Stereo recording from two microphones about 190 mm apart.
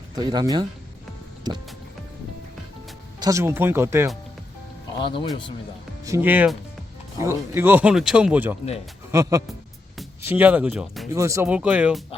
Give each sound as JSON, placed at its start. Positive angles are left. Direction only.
{"t": 0.2, "sound": "speech", "side_deg": -20}
{"t": 3.2, "sound": "speech", "side_deg": -15}
{"t": 4.9, "sound": "speech", "side_deg": 25}
{"t": 6.1, "sound": "speech", "side_deg": -10}
{"t": 10.2, "sound": "speech", "side_deg": -10}
{"t": 11.1, "sound": "speech", "side_deg": -15}